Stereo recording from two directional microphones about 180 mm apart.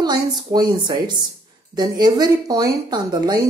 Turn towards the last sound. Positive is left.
turn(degrees=-20)  # may be behind; listen again after turning